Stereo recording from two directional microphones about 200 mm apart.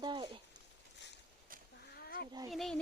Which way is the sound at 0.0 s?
20° right (ahead or behind).